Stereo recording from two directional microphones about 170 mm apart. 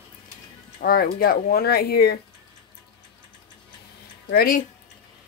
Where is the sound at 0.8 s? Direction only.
60° left (ahead or behind).